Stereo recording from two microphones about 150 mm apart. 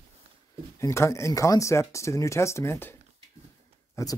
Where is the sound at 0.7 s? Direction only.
20° left (ahead or behind).